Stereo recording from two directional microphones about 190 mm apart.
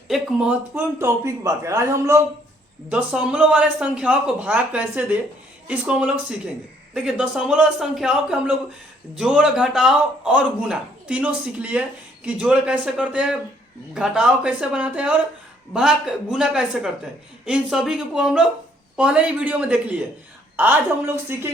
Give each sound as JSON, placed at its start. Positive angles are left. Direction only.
{"t": 0.1, "sound": "a man's voice", "side_deg": -5}
{"t": 21.3, "sound": "a man's voice", "side_deg": -10}